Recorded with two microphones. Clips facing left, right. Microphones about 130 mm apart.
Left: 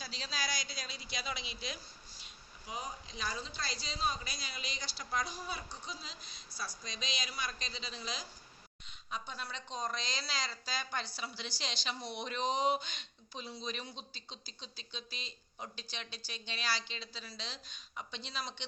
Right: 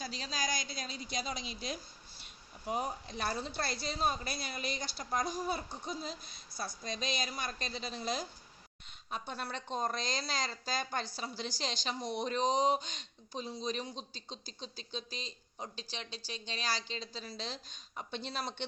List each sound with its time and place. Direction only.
0.0 s a woman's voice: 45° right (ahead or behind)
2.6 s a woman's voice: 55° right (ahead or behind)